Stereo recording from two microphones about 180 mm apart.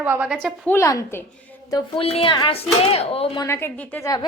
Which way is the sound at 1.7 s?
25° left (ahead or behind).